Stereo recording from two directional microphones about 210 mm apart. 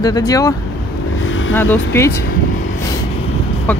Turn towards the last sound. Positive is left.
turn(degrees=10)  # may be behind; listen again after turning